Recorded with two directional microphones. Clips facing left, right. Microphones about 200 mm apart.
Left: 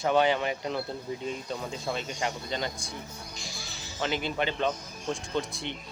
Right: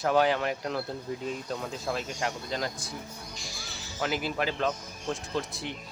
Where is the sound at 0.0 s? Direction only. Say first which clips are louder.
Even; centre (ahead or behind).